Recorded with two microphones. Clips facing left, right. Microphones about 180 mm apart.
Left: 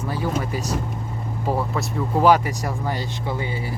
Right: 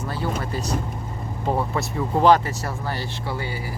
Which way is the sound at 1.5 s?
Centre (ahead or behind).